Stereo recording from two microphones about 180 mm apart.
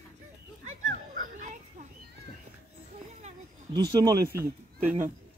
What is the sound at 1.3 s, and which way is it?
Children playing, 45° right (ahead or behind).